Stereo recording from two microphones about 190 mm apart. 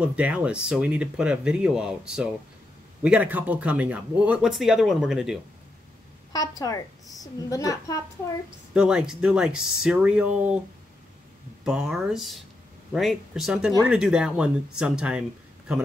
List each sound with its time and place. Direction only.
0.0 s speech: 5° right (ahead or behind)
6.3 s a woman's voice: 20° left (ahead or behind)
8.7 s speech: 5° right (ahead or behind)
11.6 s speech: 5° right (ahead or behind)